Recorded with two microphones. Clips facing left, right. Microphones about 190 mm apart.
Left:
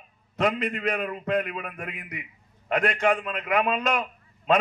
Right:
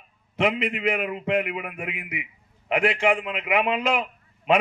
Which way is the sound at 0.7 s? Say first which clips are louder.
Right 2 dB; 15° right (ahead or behind).